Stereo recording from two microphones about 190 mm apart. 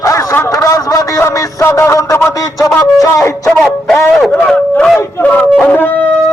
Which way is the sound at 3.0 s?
15° left (ahead or behind).